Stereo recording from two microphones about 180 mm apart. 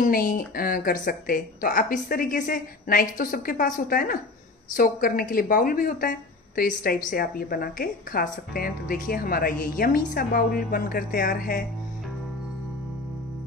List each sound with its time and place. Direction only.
0.0 s a woman's voice: 50° left (ahead or behind)